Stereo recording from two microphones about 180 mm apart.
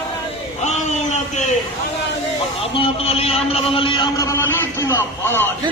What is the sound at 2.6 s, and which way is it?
A man's voice, 30° left (ahead or behind).